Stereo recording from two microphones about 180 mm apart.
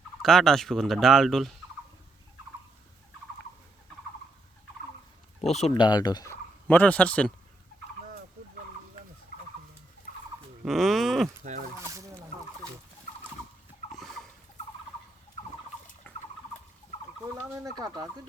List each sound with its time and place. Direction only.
0.2 s turkey: centre (ahead or behind)
5.4 s speech: 35° left (ahead or behind)
5.7 s turkey: 25° left (ahead or behind); by 7.3 s 5° left (ahead or behind)
10.7 s speech: centre (ahead or behind)
11.8 s fowl: 15° right (ahead or behind)
13.9 s fowl: centre (ahead or behind)
16.1 s a sound: 10° left (ahead or behind)
17.5 s speech: 20° right (ahead or behind)